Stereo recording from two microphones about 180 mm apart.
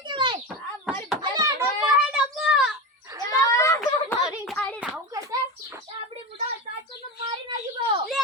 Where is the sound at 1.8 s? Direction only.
5° right (ahead or behind).